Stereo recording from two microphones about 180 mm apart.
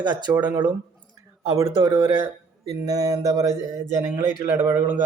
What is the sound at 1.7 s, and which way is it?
Speech, 25° right (ahead or behind).